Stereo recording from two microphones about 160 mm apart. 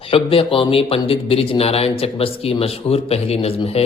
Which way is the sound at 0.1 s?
35° left (ahead or behind).